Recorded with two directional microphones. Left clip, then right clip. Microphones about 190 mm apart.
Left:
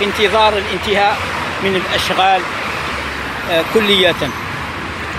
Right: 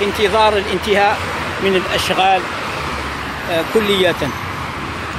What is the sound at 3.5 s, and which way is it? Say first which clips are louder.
Speech: left 3 dB; 10° right (ahead or behind).